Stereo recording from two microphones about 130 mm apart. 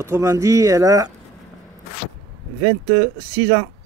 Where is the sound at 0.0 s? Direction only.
25° right (ahead or behind).